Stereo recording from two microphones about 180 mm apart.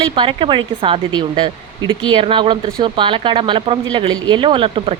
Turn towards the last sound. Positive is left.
turn(degrees=-30)  # may be behind; listen again after turning